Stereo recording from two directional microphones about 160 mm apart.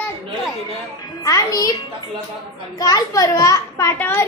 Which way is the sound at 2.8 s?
25° left (ahead or behind).